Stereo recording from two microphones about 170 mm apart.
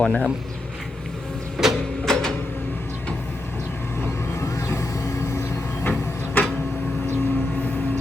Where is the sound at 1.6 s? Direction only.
Centre (ahead or behind).